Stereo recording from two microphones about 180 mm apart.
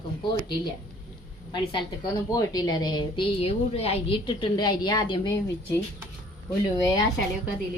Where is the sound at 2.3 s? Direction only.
20° left (ahead or behind).